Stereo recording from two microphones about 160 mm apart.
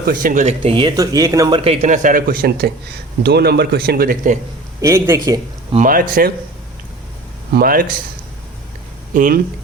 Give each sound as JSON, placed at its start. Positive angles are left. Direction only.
{"t": 0.0, "sound": "speech", "side_deg": -60}
{"t": 0.6, "sound": "speech", "side_deg": -35}
{"t": 3.2, "sound": "speech", "side_deg": -90}
{"t": 4.8, "sound": "a man's voice", "side_deg": -20}
{"t": 5.8, "sound": "speech", "side_deg": -60}
{"t": 7.5, "sound": "speech", "side_deg": -65}
{"t": 9.1, "sound": "speech", "side_deg": -55}